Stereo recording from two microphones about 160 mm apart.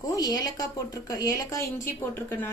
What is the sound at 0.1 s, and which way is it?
A woman's voice, 25° left (ahead or behind).